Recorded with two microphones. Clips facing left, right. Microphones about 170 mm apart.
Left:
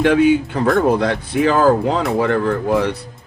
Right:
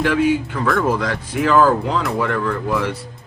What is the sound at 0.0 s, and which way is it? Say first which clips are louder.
A man's voice: left 4 dB; 35° left (ahead or behind).